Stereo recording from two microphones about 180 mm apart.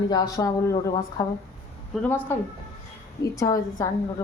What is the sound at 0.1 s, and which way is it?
A woman's voice, 20° left (ahead or behind).